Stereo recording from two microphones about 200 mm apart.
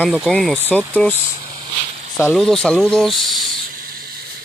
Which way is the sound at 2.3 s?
5° left (ahead or behind).